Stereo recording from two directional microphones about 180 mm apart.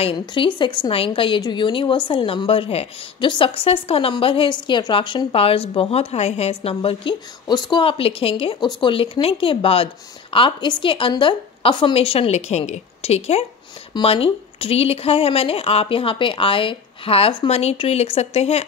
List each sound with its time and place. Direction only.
0.0 s a woman's voice: 25° left (ahead or behind)